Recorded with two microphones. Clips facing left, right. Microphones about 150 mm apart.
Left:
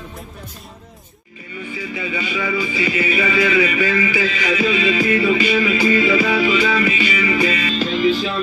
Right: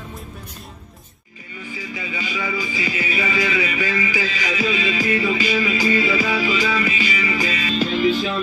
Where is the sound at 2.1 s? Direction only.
20° right (ahead or behind).